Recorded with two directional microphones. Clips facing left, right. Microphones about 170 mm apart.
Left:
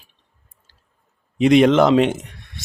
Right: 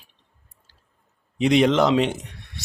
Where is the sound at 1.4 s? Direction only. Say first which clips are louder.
Left 5 dB; 50° left (ahead or behind).